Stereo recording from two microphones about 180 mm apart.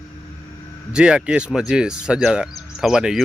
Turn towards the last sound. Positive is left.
turn(degrees=-5)  # may be behind; listen again after turning